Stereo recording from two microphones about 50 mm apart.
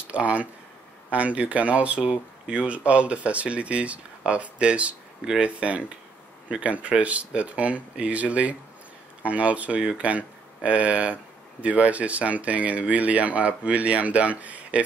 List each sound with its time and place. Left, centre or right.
0.1 s speech: right